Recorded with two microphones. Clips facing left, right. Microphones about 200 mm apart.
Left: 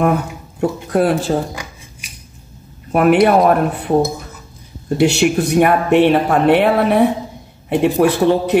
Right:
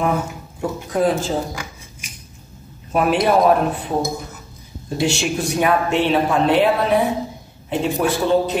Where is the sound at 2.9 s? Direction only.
65° left (ahead or behind).